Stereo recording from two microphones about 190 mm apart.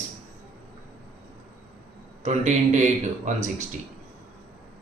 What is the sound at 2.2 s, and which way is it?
Speech, 40° right (ahead or behind).